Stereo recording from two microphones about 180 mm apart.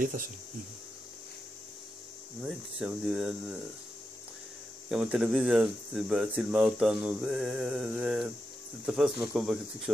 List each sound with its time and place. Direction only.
0.0 s speech: 50° right (ahead or behind)
2.4 s speech: 5° right (ahead or behind)
4.9 s speech: 5° right (ahead or behind)